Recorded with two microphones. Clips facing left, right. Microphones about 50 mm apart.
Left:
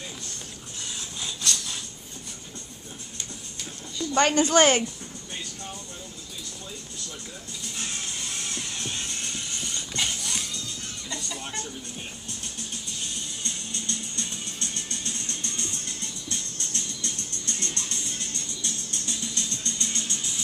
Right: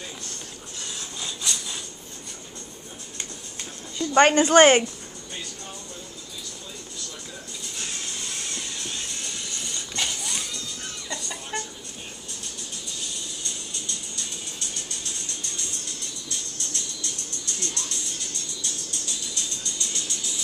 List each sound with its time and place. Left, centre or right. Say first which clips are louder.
1.2 s a sound: left 1 dB; centre
4.0 s a woman's voice: right 4 dB; right
11.1 s music: right 1 dB; right
13.4 s music: left 1 dB; left
15.2 s music: left 1 dB; left